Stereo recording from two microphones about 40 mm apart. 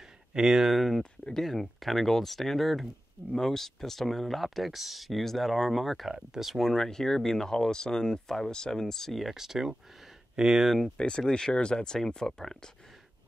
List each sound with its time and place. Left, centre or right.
0.4 s speech: centre
6.0 s speech: centre
6.5 s speech: centre
9.3 s speech: centre
11.0 s speech: left